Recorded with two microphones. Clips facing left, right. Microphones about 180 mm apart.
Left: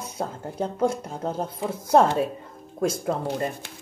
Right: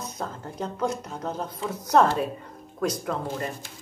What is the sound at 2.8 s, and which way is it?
Speech, 30° left (ahead or behind).